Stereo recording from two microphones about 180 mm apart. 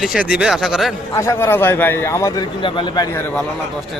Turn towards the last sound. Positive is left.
turn(degrees=25)  # may be behind; listen again after turning